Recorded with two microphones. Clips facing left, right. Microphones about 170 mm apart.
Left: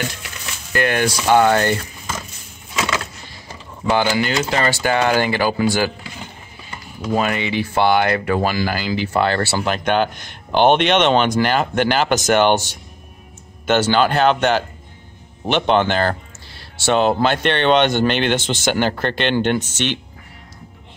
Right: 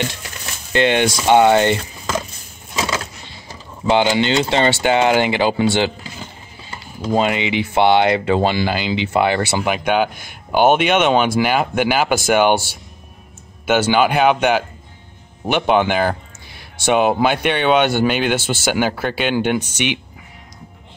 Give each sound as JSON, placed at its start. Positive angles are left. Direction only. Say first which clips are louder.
{"t": 0.7, "sound": "speech", "louder": "right 3 dB", "side_deg": -25}
{"t": 3.9, "sound": "speech", "louder": "right 3 dB", "side_deg": -20}
{"t": 7.1, "sound": "speech", "louder": "right 2 dB", "side_deg": -20}